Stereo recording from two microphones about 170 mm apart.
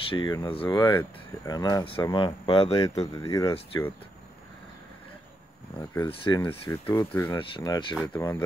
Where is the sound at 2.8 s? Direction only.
20° left (ahead or behind).